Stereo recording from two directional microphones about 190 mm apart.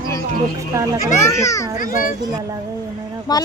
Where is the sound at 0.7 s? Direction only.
15° right (ahead or behind).